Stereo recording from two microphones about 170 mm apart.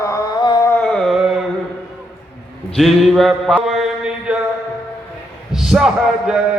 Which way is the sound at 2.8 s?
Centre (ahead or behind).